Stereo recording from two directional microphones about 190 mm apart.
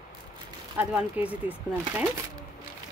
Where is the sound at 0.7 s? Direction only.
10° right (ahead or behind).